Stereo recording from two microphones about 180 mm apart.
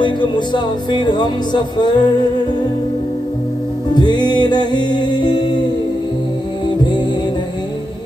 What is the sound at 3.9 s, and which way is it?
Music, 25° left (ahead or behind).